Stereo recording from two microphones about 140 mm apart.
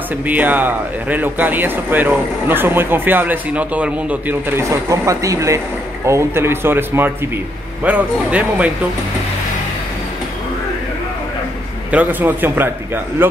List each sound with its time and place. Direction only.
0.3 s speech: 10° right (ahead or behind)
11.9 s speech: 10° right (ahead or behind)